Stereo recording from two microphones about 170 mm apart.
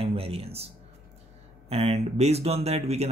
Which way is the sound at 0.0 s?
35° right (ahead or behind).